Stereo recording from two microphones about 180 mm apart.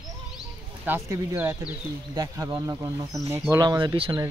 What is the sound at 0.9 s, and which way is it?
Speech, 15° right (ahead or behind).